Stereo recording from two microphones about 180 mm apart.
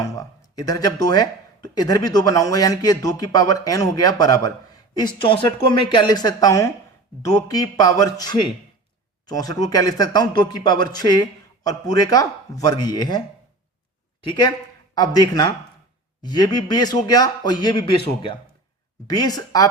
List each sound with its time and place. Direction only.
0.0 s speech: 20° left (ahead or behind)
14.3 s speech: 25° left (ahead or behind)